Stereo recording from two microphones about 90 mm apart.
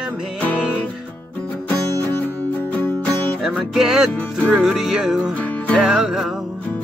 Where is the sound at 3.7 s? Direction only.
5° right (ahead or behind).